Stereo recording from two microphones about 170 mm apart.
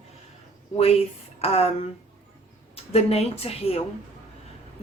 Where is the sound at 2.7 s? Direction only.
35° left (ahead or behind).